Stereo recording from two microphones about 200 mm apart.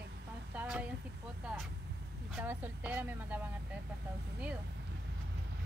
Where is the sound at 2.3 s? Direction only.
10° right (ahead or behind).